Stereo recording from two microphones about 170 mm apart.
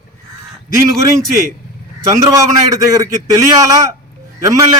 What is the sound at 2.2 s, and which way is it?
A man's voice, 20° right (ahead or behind).